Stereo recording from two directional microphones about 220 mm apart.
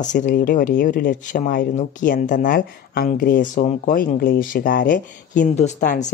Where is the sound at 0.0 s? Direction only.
35° left (ahead or behind).